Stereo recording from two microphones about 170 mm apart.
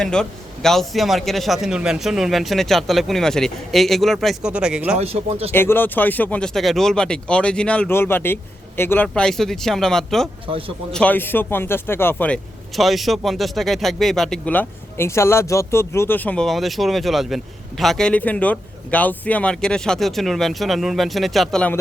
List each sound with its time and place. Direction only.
0.0 s speech: 5° left (ahead or behind)
4.9 s speech: 40° right (ahead or behind)
5.5 s speech: 10° left (ahead or behind)